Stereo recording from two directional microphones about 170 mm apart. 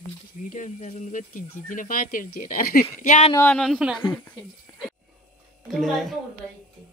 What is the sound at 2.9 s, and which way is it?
Speech, 45° left (ahead or behind).